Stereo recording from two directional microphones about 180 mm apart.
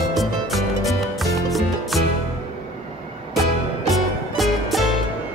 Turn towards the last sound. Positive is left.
turn(degrees=0)  # may be behind; listen again after turning